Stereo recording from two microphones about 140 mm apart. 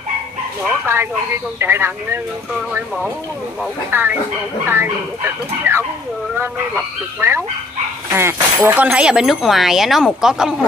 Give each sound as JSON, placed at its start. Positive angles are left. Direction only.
{"t": 0.9, "sound": "speech", "side_deg": -20}
{"t": 3.9, "sound": "speech", "side_deg": -15}